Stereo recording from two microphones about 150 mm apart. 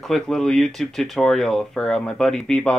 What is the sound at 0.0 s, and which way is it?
Speech, 5° left (ahead or behind).